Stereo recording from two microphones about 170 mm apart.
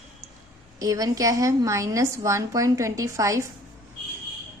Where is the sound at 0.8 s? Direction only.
20° right (ahead or behind).